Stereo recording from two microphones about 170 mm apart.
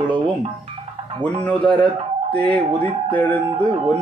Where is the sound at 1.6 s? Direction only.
30° right (ahead or behind).